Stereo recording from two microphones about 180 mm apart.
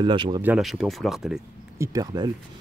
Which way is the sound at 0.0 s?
25° right (ahead or behind).